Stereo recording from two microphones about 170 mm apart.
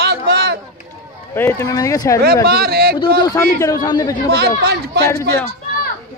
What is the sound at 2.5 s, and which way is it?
Speech, 65° right (ahead or behind).